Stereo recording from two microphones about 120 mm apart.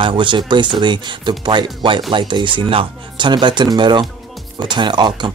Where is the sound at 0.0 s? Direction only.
40° right (ahead or behind).